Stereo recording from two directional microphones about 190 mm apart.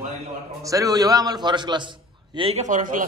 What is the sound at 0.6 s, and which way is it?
A man's voice, 20° right (ahead or behind).